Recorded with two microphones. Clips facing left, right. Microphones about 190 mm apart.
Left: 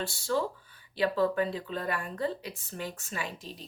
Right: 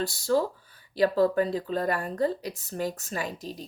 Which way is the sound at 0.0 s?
40° right (ahead or behind).